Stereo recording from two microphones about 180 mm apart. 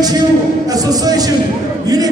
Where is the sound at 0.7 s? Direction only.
20° right (ahead or behind).